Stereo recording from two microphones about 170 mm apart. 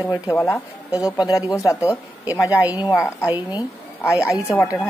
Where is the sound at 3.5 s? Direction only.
20° left (ahead or behind).